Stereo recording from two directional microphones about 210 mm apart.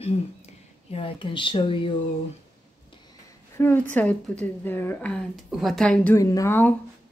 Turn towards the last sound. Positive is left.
turn(degrees=10)  # may be behind; listen again after turning